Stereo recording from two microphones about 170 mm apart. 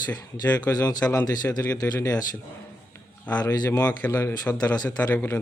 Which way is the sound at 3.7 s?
10° left (ahead or behind).